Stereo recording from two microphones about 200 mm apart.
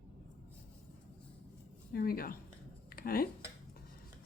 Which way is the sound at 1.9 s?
50° left (ahead or behind).